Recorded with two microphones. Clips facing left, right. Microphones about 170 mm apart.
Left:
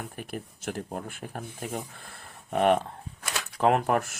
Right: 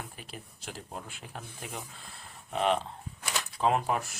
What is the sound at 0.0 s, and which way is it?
Speech, 55° left (ahead or behind).